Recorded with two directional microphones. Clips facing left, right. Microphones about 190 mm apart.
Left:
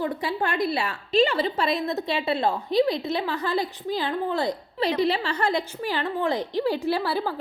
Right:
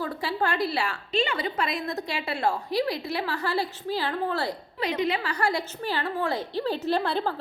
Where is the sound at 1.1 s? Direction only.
35° left (ahead or behind); by 4.5 s 20° left (ahead or behind).